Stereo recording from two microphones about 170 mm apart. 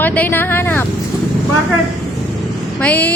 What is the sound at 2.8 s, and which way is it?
Speech, 10° left (ahead or behind).